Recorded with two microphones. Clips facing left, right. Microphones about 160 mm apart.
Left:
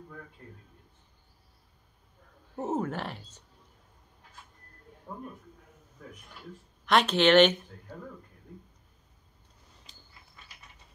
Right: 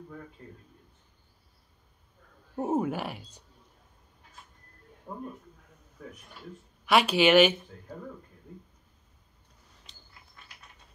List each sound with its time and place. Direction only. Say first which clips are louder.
2.5 s speech: right 3 dB; 10° right (ahead or behind)
5.1 s speech: right 2 dB; 10° right (ahead or behind)
6.9 s speech: right 1 dB; 10° right (ahead or behind)